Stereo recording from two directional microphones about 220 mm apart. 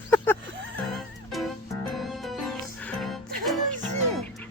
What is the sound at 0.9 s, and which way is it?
Music, centre (ahead or behind).